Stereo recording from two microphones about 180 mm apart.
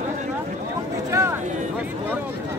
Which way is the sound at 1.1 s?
15° right (ahead or behind).